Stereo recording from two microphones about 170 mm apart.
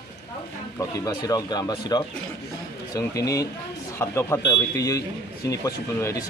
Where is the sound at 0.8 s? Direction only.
20° left (ahead or behind).